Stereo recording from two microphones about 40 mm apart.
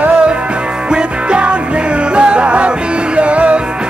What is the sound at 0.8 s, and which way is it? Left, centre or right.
Music, right.